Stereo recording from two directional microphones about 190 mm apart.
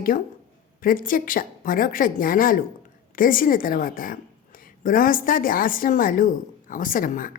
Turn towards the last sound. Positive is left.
turn(degrees=45)  # may be behind; listen again after turning